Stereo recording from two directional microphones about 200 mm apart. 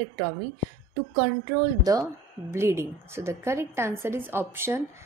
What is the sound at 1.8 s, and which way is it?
A woman's voice, 15° right (ahead or behind).